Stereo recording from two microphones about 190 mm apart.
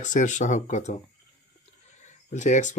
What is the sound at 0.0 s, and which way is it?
Speech, 40° left (ahead or behind).